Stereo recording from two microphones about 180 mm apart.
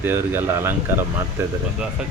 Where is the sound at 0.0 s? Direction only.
10° right (ahead or behind).